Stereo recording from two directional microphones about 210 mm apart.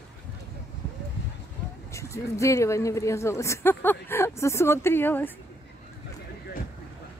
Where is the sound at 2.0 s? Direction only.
15° left (ahead or behind).